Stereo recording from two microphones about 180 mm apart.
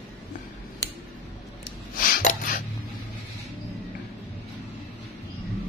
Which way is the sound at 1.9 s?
50° left (ahead or behind).